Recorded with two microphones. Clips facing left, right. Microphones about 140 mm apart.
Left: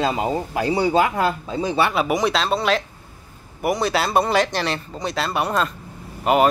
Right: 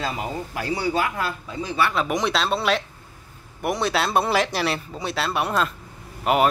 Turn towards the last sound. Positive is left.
turn(degrees=0)  # may be behind; listen again after turning